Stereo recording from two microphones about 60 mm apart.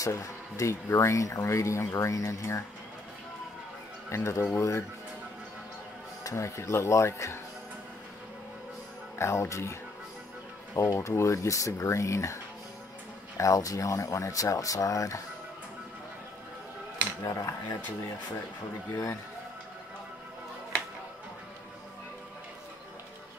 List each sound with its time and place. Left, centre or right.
0.0 s speech: left
4.1 s speech: left
6.2 s speech: left
9.2 s speech: left
13.4 s speech: left
17.2 s speech: left